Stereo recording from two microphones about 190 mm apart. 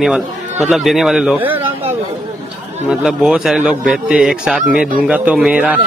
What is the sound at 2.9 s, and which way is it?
A man's voice, 5° right (ahead or behind).